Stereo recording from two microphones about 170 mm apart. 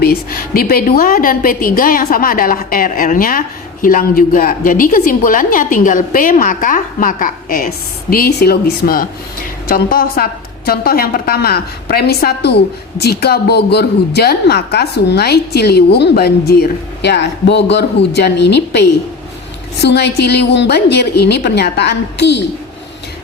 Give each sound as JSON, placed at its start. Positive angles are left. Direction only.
{"t": 0.0, "sound": "a woman's voice", "side_deg": 60}
{"t": 8.1, "sound": "a woman's voice", "side_deg": 65}
{"t": 8.8, "sound": "a woman's voice", "side_deg": 50}